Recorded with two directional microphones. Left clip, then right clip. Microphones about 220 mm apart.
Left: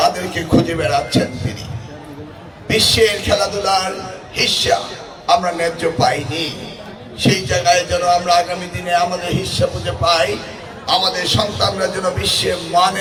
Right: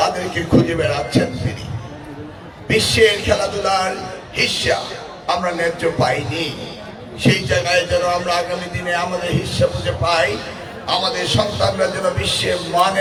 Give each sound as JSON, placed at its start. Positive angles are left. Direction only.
{"t": 0.0, "sound": "a man's voice", "side_deg": 50}
{"t": 2.6, "sound": "a man's voice", "side_deg": 45}